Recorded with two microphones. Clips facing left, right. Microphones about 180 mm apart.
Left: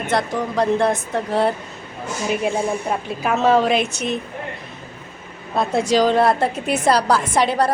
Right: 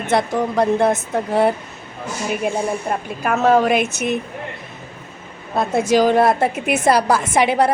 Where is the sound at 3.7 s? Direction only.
50° right (ahead or behind).